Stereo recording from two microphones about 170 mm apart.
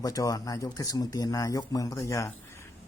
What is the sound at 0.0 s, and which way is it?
Speech, 20° left (ahead or behind).